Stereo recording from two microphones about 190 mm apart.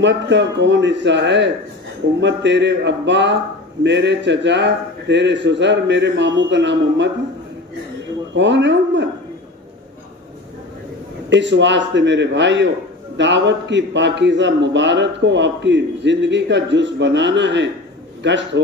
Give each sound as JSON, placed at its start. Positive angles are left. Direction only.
{"t": 0.0, "sound": "a man's voice", "side_deg": -65}
{"t": 8.4, "sound": "a man's voice", "side_deg": -70}
{"t": 11.2, "sound": "a man's voice", "side_deg": -70}